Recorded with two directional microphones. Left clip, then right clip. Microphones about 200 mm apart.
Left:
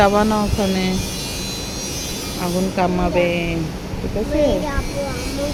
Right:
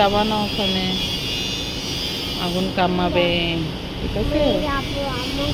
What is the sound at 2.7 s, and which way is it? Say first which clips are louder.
Music: left 1 dB; 10° left (ahead or behind).